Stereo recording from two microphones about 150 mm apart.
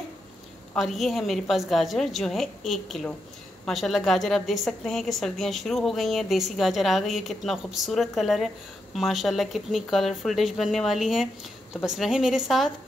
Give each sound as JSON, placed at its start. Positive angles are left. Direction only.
{"t": 0.7, "sound": "a woman's voice", "side_deg": 0}